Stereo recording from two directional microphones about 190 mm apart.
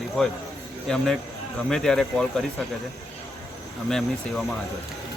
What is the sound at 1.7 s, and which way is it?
Speech, centre (ahead or behind).